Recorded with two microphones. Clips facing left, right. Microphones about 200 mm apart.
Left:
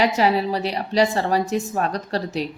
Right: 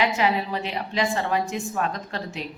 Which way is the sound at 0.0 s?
35° left (ahead or behind).